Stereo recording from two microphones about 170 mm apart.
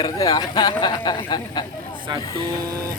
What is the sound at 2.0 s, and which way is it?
Speech, 25° right (ahead or behind).